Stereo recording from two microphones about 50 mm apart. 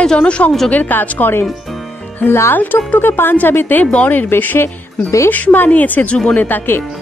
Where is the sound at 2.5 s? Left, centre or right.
Left.